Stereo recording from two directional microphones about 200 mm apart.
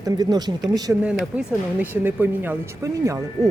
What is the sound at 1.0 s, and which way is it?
Speech, 5° right (ahead or behind).